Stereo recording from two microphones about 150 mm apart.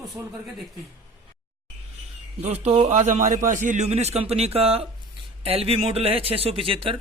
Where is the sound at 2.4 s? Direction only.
45° right (ahead or behind).